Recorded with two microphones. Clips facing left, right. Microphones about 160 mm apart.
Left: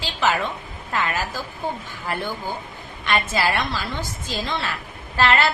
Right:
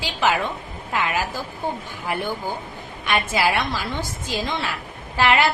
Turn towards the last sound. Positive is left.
turn(degrees=-15)  # may be behind; listen again after turning